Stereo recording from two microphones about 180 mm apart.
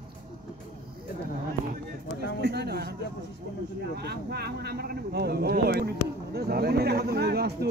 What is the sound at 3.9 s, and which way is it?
Speech, 65° right (ahead or behind).